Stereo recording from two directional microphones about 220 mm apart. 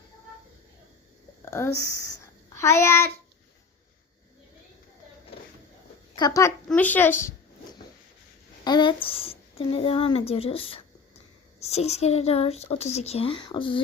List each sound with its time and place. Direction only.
1.5 s speech: 10° left (ahead or behind)
1.7 s speech: 45° right (ahead or behind)
2.6 s speech: 10° left (ahead or behind)
6.1 s speech: 15° left (ahead or behind)
8.6 s a woman's voice: 20° left (ahead or behind)